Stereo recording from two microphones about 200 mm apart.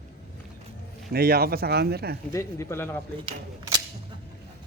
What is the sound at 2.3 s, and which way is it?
Speech, 15° left (ahead or behind).